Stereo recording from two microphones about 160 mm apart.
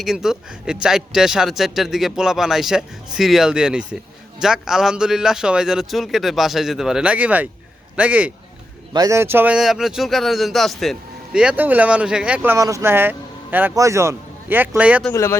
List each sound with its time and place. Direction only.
0.0 s speech: centre (ahead or behind)
8.9 s speech: 20° right (ahead or behind)
15.1 s speech: 20° left (ahead or behind)